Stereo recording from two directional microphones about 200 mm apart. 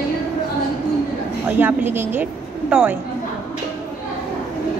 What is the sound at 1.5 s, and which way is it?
A woman's voice, 10° right (ahead or behind).